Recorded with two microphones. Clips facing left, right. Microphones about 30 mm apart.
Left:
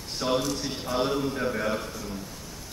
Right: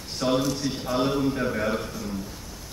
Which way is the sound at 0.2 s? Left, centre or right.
Centre.